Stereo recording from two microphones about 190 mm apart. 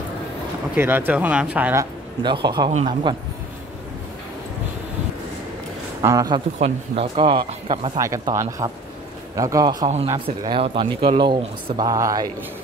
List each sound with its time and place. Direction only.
0.7 s speech: 10° right (ahead or behind)
2.2 s speech: 25° right (ahead or behind)
6.0 s speech: 20° right (ahead or behind)
8.0 s speech: 15° right (ahead or behind)